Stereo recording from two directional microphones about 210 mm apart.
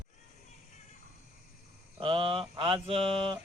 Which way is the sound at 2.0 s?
25° right (ahead or behind).